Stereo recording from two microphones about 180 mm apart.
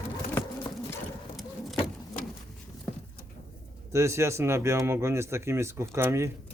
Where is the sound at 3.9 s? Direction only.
15° right (ahead or behind).